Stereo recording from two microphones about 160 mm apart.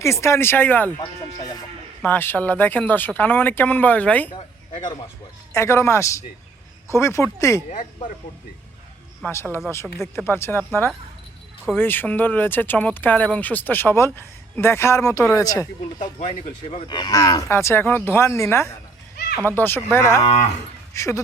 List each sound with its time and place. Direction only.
0.0 s speech: 15° left (ahead or behind)
4.3 s speech: 35° left (ahead or behind)
5.5 s speech: 15° left (ahead or behind)
7.7 s speech: 55° left (ahead or behind)
9.2 s speech: 15° left (ahead or behind)
20.2 s speech: 45° left (ahead or behind)
20.9 s speech: 20° left (ahead or behind)